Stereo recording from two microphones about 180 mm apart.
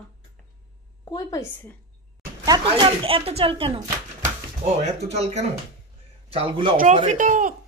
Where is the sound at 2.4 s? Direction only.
25° right (ahead or behind).